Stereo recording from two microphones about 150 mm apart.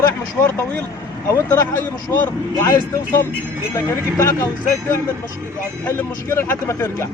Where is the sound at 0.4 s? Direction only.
10° left (ahead or behind).